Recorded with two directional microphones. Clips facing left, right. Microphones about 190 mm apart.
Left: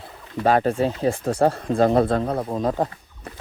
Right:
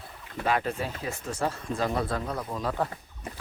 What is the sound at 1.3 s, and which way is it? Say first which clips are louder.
Speech: left 8 dB; 60° left (ahead or behind).